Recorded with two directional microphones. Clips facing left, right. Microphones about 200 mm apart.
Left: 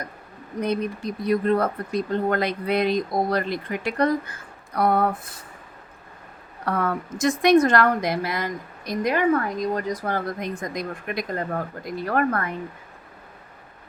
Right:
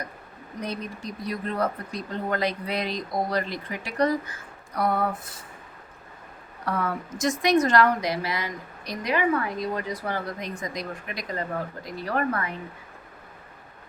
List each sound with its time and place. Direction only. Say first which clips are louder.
0.6 s speech: left 8 dB; 55° left (ahead or behind)
6.7 s a woman's voice: left 3 dB; 55° left (ahead or behind)